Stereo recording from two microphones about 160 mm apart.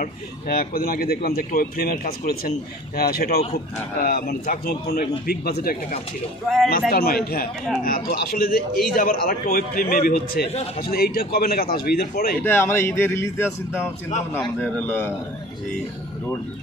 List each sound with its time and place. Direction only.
0.0 s speech: 60° left (ahead or behind)
12.4 s a man's voice: 15° left (ahead or behind)